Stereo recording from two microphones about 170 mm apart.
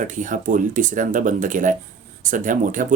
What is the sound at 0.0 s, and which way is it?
Speech, 50° right (ahead or behind).